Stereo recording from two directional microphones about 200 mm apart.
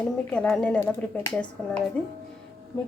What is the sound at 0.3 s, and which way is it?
A woman's voice, 5° left (ahead or behind).